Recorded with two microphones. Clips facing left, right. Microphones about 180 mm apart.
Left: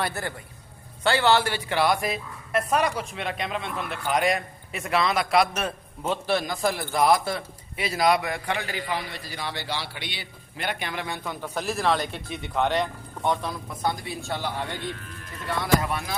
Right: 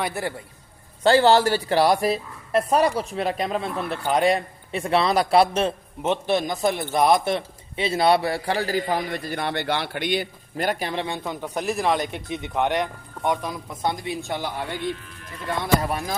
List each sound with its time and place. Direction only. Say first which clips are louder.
1.0 s a man's voice: right 5 dB; 35° right (ahead or behind); by 14.8 s 15° right (ahead or behind)
15.8 s a man's voice: right 3 dB; 40° right (ahead or behind)